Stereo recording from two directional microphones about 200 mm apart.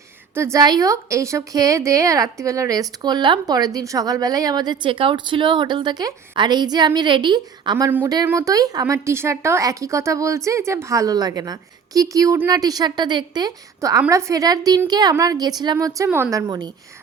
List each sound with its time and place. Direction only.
0.3 s a woman's voice: 15° right (ahead or behind)